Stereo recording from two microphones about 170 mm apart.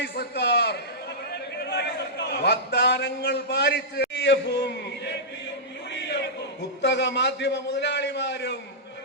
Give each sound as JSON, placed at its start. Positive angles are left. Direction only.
{"t": 0.0, "sound": "a man's voice", "side_deg": 75}
{"t": 1.5, "sound": "a sound", "side_deg": 75}
{"t": 6.8, "sound": "a man's voice", "side_deg": 90}